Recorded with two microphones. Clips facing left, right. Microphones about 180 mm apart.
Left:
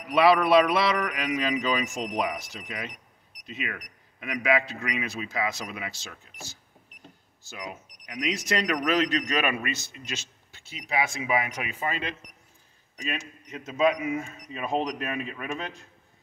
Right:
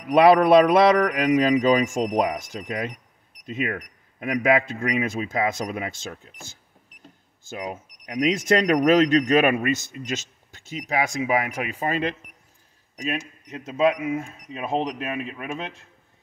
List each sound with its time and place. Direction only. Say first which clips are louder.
0.1 s a man's voice: right 5 dB; 50° right (ahead or behind)
7.7 s a man's voice: right 8 dB; 50° right (ahead or behind)
14.7 s speech: right 2 dB; 30° right (ahead or behind)
15.0 s speech: right 2 dB; 10° right (ahead or behind)